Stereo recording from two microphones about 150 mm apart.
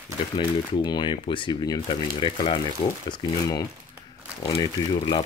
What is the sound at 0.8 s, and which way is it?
Speech, 30° left (ahead or behind).